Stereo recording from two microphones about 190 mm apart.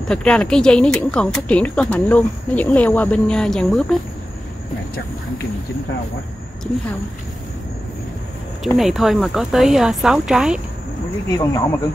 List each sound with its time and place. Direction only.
0.1 s speech: 5° left (ahead or behind)
8.6 s speech: centre (ahead or behind)
11.2 s speech: 20° left (ahead or behind)